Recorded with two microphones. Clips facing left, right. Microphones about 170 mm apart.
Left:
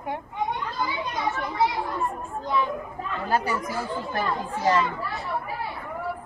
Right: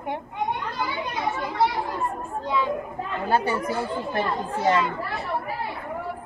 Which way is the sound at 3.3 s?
30° right (ahead or behind).